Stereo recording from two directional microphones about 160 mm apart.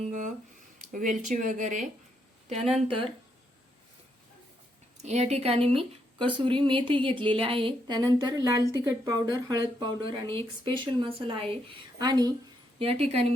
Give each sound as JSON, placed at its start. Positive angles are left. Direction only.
{"t": 0.1, "sound": "speech", "side_deg": -50}
{"t": 2.5, "sound": "speech", "side_deg": -40}
{"t": 5.0, "sound": "speech", "side_deg": -45}
{"t": 12.8, "sound": "speech", "side_deg": -40}